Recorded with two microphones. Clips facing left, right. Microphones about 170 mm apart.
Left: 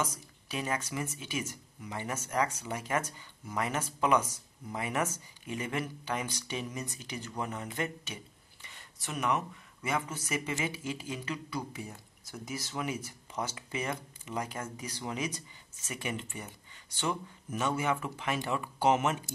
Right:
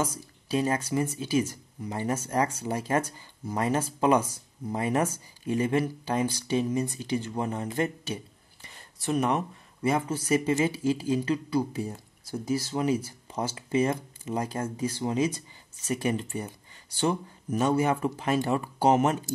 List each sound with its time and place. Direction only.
0.0 s speech: 30° right (ahead or behind)